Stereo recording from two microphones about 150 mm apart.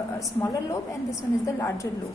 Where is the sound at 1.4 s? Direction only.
20° left (ahead or behind).